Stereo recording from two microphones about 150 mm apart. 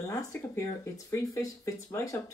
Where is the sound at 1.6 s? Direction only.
20° left (ahead or behind).